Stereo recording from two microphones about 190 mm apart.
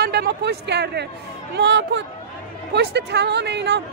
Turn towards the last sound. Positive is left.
turn(degrees=-60)  # may be behind; listen again after turning